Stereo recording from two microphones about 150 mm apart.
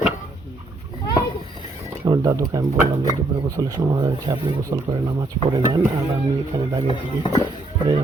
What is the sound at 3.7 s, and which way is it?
Speech, 25° right (ahead or behind).